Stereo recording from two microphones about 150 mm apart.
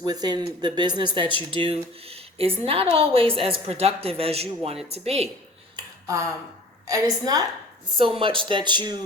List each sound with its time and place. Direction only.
0.0 s a woman's voice: 25° right (ahead or behind); by 5.3 s 45° right (ahead or behind)
5.7 s a sound: 20° right (ahead or behind)
6.8 s a woman's voice: 20° right (ahead or behind)
7.9 s a woman's voice: 35° right (ahead or behind)